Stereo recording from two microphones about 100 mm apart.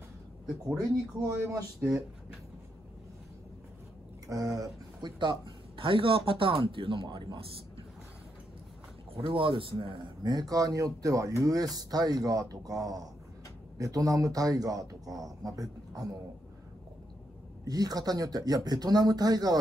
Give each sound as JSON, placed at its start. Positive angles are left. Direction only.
{"t": 0.7, "sound": "speech", "side_deg": -35}
{"t": 4.3, "sound": "speech", "side_deg": -35}
{"t": 5.2, "sound": "a man's voice", "side_deg": -50}
{"t": 9.1, "sound": "a man's voice", "side_deg": -60}
{"t": 10.2, "sound": "speech", "side_deg": -40}
{"t": 17.6, "sound": "speech", "side_deg": -40}